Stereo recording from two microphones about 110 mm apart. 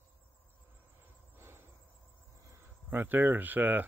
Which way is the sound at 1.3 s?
20° right (ahead or behind).